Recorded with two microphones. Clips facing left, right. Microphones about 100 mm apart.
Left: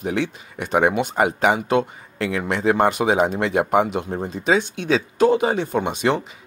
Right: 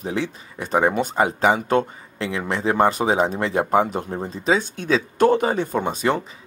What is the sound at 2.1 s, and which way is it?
Speech, 30° right (ahead or behind).